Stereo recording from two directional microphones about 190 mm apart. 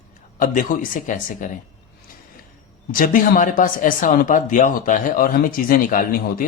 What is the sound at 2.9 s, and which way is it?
Speech, 45° left (ahead or behind).